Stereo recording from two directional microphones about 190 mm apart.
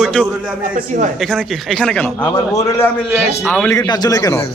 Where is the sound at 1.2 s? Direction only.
Centre (ahead or behind).